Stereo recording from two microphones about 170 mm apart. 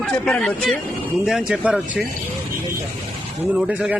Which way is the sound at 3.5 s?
5° right (ahead or behind).